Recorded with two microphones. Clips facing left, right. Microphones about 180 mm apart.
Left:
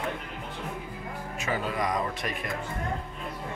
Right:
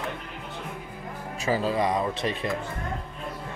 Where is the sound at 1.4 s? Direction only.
30° right (ahead or behind).